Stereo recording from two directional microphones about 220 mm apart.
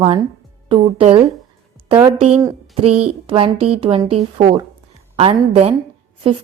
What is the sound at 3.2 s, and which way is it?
Speech, 25° right (ahead or behind).